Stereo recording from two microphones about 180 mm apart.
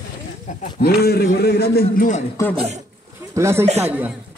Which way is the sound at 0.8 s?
60° left (ahead or behind).